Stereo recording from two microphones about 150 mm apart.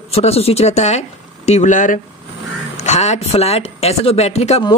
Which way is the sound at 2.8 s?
50° left (ahead or behind).